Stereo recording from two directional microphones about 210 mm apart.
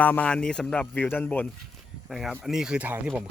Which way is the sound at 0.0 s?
5° left (ahead or behind).